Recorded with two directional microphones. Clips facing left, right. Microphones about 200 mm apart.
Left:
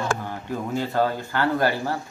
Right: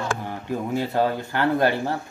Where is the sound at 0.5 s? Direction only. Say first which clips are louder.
Right 1 dB; 15° right (ahead or behind).